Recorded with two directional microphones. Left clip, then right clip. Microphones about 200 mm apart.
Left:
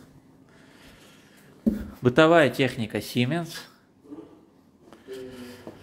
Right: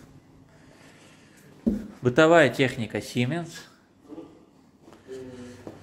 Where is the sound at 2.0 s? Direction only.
15° left (ahead or behind).